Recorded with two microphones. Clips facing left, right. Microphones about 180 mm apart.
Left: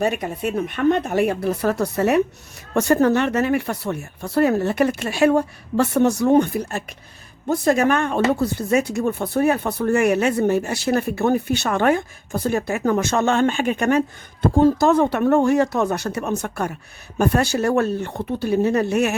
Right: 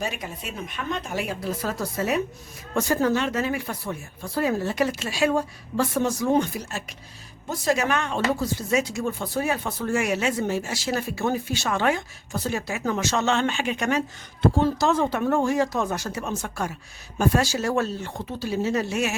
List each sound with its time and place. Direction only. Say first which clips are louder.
0.0 s speech: left 10 dB; 60° left (ahead or behind)